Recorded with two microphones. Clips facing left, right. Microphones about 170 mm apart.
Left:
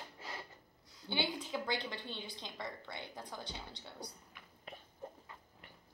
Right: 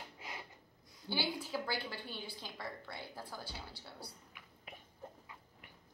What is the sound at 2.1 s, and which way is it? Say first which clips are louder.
A woman's voice: even; 5° right (ahead or behind).